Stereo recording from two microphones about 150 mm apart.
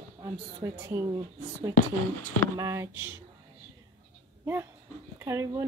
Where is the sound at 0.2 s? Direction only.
25° right (ahead or behind).